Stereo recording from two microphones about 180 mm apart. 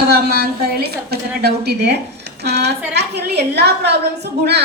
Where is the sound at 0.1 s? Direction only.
60° right (ahead or behind).